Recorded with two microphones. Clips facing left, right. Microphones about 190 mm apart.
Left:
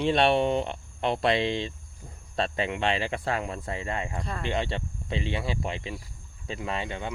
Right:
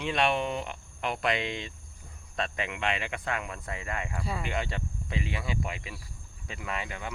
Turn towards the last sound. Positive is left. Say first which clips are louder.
# left 4 dB
turn(degrees=25)  # may be behind; listen again after turning